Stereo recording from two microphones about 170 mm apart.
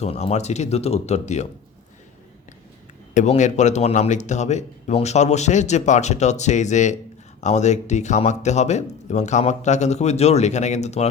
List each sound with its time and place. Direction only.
0.0 s speech: 40° left (ahead or behind)
3.2 s speech: 45° left (ahead or behind)